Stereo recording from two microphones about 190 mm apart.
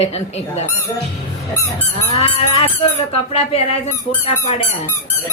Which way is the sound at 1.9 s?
30° left (ahead or behind).